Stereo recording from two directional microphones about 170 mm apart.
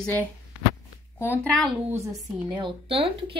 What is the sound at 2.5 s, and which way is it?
Speech, 30° right (ahead or behind).